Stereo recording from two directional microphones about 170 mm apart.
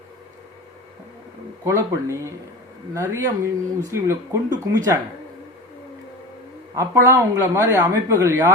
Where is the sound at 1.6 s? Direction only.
15° right (ahead or behind).